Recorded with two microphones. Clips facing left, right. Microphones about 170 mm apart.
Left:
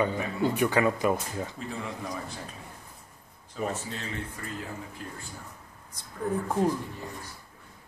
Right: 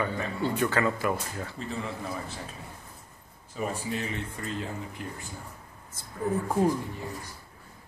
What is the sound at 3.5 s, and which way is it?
Speech, 10° right (ahead or behind).